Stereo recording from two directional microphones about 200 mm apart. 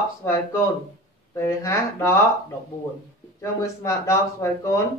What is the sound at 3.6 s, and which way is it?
Speech, 15° left (ahead or behind).